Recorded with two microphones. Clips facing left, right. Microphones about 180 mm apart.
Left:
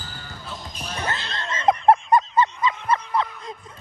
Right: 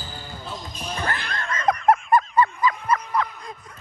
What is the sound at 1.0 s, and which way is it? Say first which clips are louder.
Snicker: even; 20° left (ahead or behind).